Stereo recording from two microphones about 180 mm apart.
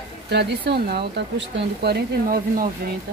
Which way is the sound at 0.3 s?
70° right (ahead or behind).